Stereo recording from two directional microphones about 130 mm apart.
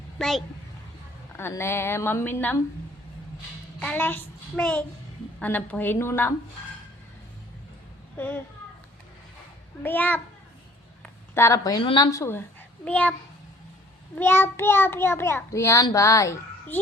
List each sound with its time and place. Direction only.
0.2 s a woman's voice: centre (ahead or behind)
1.4 s a woman's voice: 20° left (ahead or behind)
3.8 s a woman's voice: 10° left (ahead or behind)
8.1 s a child's voice: 10° left (ahead or behind)
9.8 s a woman's voice: 15° left (ahead or behind)
11.3 s a child's voice: 25° left (ahead or behind)
11.8 s a woman's voice: 45° left (ahead or behind)
12.1 s a woman's voice: 20° left (ahead or behind)
14.2 s a child's voice: 15° left (ahead or behind)